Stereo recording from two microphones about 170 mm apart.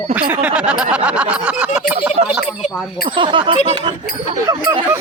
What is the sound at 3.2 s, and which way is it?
Speech, 30° right (ahead or behind).